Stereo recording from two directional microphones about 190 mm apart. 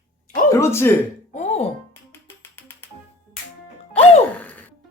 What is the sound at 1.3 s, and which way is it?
Music, 35° left (ahead or behind).